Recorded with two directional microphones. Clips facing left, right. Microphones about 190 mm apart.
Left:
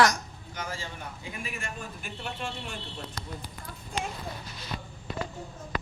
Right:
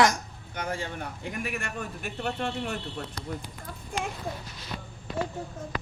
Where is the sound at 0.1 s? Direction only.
60° right (ahead or behind).